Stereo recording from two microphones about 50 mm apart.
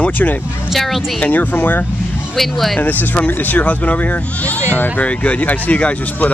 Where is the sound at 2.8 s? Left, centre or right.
Left.